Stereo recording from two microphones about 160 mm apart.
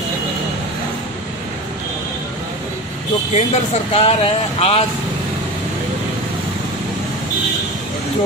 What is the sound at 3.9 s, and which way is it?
Speech, 40° left (ahead or behind).